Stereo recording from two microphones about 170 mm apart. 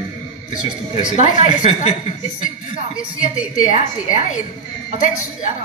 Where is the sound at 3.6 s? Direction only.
45° left (ahead or behind).